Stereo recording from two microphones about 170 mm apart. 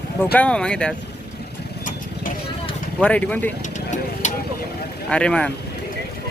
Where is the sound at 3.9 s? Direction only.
45° left (ahead or behind).